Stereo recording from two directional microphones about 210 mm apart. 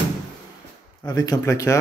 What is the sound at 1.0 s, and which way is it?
Speech, 20° left (ahead or behind).